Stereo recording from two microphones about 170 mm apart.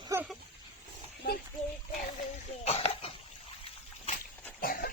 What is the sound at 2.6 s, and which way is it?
Cough, 35° left (ahead or behind).